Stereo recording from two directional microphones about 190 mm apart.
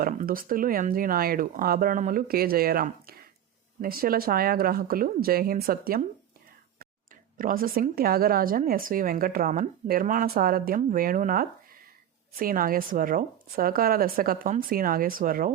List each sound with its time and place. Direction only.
0.0 s a woman's voice: 50° right (ahead or behind)
7.3 s a woman's voice: 50° right (ahead or behind)